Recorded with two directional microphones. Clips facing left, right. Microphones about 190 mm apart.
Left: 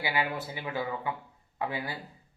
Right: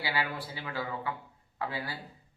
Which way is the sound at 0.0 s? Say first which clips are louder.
Left 3 dB; 20° left (ahead or behind).